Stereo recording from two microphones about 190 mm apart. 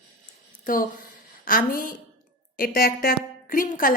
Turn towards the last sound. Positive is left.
turn(degrees=45)  # may be behind; listen again after turning